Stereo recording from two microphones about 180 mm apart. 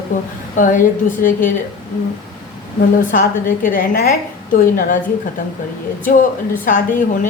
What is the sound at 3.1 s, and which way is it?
A woman's voice, 45° left (ahead or behind).